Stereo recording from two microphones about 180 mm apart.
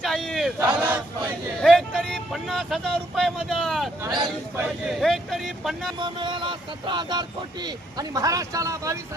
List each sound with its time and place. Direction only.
0.0 s battle cry: centre (ahead or behind)
1.6 s a sound: centre (ahead or behind)
4.0 s speech: 25° right (ahead or behind)
4.5 s speech: centre (ahead or behind)
6.0 s speech: 25° right (ahead or behind)